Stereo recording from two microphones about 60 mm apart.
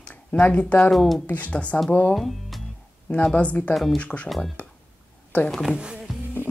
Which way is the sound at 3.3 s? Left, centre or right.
Left.